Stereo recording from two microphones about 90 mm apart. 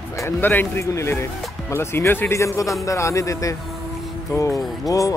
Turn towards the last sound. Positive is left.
turn(degrees=40)  # may be behind; listen again after turning